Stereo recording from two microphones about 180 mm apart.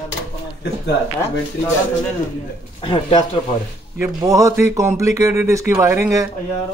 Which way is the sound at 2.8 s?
25° left (ahead or behind).